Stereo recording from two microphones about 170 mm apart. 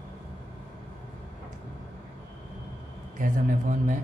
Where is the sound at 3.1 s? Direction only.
50° right (ahead or behind).